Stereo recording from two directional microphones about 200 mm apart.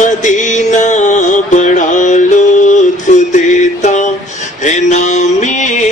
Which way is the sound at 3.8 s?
35° left (ahead or behind).